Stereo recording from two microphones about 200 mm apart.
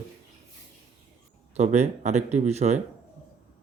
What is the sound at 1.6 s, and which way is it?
Speech, 35° right (ahead or behind).